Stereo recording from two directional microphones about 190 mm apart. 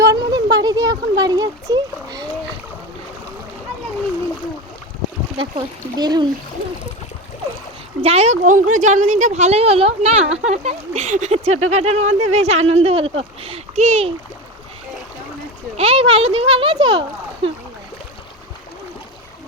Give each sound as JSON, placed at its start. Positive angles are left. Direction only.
{"t": 0.0, "sound": "a sound", "side_deg": -20}
{"t": 0.5, "sound": "splash", "side_deg": -20}
{"t": 5.4, "sound": "speech", "side_deg": -25}
{"t": 8.0, "sound": "speech", "side_deg": -35}
{"t": 15.8, "sound": "speech", "side_deg": -30}